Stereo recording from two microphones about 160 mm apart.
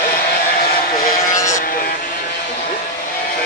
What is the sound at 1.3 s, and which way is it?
Vehicle, 20° left (ahead or behind).